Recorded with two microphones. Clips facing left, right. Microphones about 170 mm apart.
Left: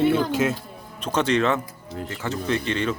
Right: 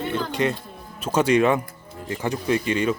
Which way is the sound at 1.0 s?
10° right (ahead or behind).